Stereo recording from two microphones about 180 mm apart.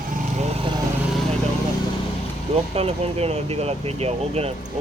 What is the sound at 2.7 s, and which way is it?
Speech, 35° right (ahead or behind).